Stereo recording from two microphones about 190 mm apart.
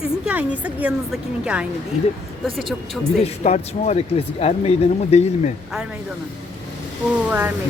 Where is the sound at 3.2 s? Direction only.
35° left (ahead or behind).